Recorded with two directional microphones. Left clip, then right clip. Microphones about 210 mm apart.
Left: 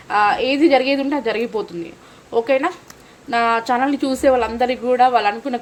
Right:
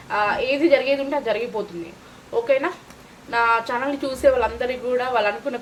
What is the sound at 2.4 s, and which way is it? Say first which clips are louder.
A woman's voice: even; 50° left (ahead or behind).